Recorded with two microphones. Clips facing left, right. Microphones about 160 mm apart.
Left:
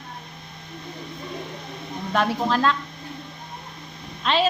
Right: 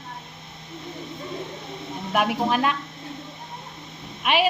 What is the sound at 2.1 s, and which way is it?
Speech, 15° right (ahead or behind).